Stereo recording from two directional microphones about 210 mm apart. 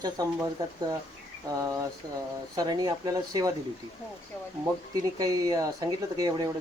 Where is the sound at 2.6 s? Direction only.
20° right (ahead or behind).